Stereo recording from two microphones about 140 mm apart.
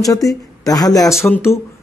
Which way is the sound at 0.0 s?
25° left (ahead or behind).